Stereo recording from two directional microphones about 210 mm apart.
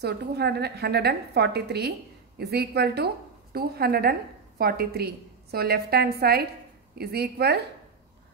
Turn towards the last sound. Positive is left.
turn(degrees=-50)  # may be behind; listen again after turning